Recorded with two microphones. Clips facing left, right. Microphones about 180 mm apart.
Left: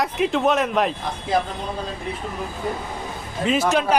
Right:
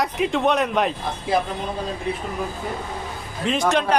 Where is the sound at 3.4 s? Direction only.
5° left (ahead or behind).